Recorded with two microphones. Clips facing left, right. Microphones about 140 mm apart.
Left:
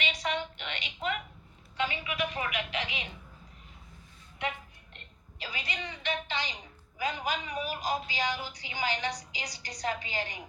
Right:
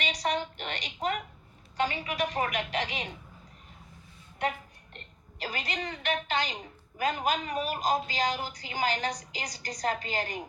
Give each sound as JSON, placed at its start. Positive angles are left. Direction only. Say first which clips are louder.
{"t": 0.0, "sound": "a sound", "louder": "right 3 dB", "side_deg": -40}
{"t": 1.7, "sound": "speech", "louder": "right 3 dB", "side_deg": -40}
{"t": 4.4, "sound": "a woman's voice", "louder": "right 4 dB", "side_deg": -45}